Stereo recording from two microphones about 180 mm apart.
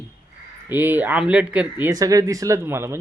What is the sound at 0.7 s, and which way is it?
Speech, 10° right (ahead or behind).